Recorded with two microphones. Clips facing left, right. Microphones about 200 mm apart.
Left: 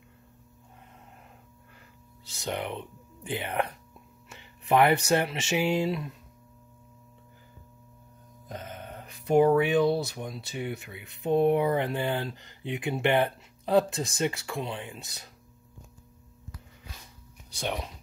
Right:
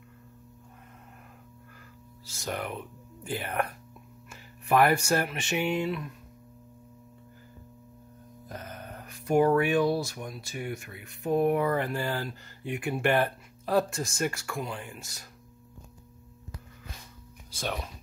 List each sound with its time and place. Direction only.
2.3 s speech: 20° left (ahead or behind)
8.5 s speech: 20° left (ahead or behind)